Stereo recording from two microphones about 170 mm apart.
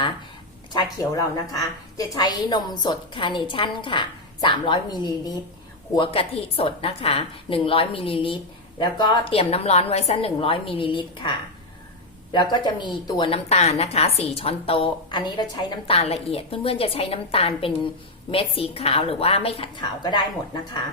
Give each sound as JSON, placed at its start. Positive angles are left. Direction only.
{"t": 0.7, "sound": "a woman's voice", "side_deg": 25}
{"t": 6.0, "sound": "a woman's voice", "side_deg": 35}
{"t": 16.0, "sound": "a woman's voice", "side_deg": 35}